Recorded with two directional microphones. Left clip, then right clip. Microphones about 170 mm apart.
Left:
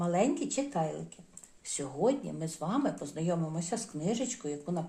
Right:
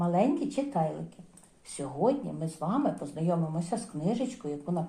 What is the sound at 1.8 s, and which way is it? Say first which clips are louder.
Speech: right 2 dB; 20° left (ahead or behind).